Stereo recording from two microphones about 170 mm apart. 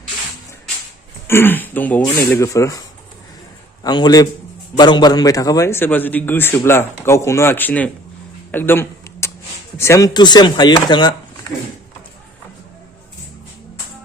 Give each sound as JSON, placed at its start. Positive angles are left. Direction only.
{"t": 1.3, "sound": "a man's voice", "side_deg": 15}
{"t": 3.8, "sound": "a man's voice", "side_deg": 25}
{"t": 8.5, "sound": "a sound", "side_deg": 10}
{"t": 9.7, "sound": "speech", "side_deg": 15}